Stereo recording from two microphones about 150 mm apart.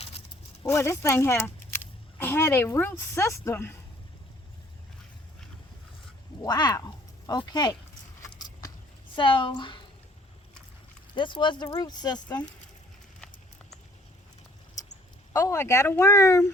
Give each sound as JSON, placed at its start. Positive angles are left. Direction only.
{"t": 0.6, "sound": "speech", "side_deg": 15}
{"t": 6.4, "sound": "speech", "side_deg": 30}
{"t": 9.1, "sound": "a woman's voice", "side_deg": 35}
{"t": 11.1, "sound": "speech", "side_deg": 35}
{"t": 15.3, "sound": "speech", "side_deg": 20}